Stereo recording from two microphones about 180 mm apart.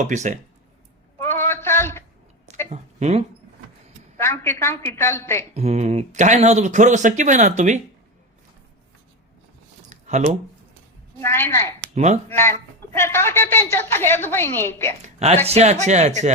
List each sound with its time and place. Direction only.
0.0 s speech: 45° right (ahead or behind)
1.3 s a sound: 15° left (ahead or behind)
2.6 s speech: 40° right (ahead or behind)
4.2 s a woman's voice: 15° left (ahead or behind)
5.5 s speech: 40° right (ahead or behind)
9.9 s a sound: 40° right (ahead or behind)
11.2 s a woman's voice: 15° left (ahead or behind)
11.9 s speech: 40° right (ahead or behind)
12.3 s a woman's voice: 15° left (ahead or behind)
15.4 s speech: 40° right (ahead or behind)